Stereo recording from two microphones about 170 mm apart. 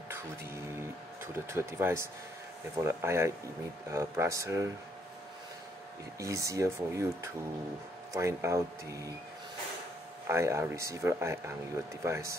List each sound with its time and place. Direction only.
0.1 s speech: 15° right (ahead or behind)
6.1 s speech: 20° right (ahead or behind)
8.1 s speech: 15° right (ahead or behind)
10.2 s speech: 15° right (ahead or behind)